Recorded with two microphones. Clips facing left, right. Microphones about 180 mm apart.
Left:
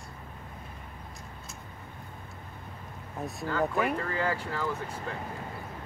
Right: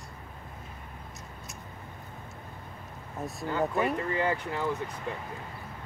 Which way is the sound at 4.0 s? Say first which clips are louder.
Right 2 dB; 20° right (ahead or behind).